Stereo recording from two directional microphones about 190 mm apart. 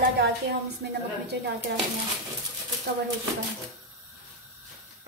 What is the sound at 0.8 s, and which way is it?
Speech, 55° right (ahead or behind).